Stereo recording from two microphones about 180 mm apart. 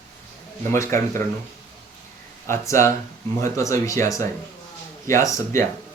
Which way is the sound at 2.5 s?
15° left (ahead or behind).